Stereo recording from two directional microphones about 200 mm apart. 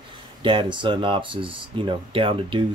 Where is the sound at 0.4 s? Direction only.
25° right (ahead or behind).